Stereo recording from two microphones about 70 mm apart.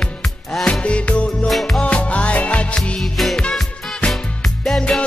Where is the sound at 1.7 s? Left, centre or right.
Centre.